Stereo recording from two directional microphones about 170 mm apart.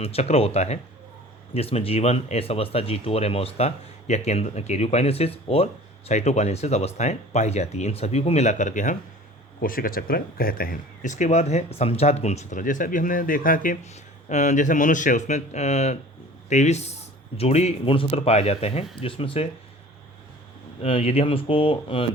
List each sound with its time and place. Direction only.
0.0 s speech: 35° left (ahead or behind)
20.8 s speech: 35° left (ahead or behind)